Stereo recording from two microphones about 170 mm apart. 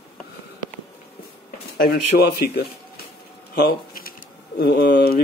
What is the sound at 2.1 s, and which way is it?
Speech, 70° left (ahead or behind).